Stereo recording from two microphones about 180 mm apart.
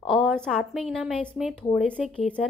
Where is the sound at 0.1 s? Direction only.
Centre (ahead or behind).